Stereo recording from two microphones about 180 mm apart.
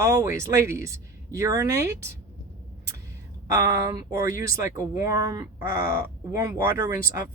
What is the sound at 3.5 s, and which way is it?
Speech, 15° right (ahead or behind).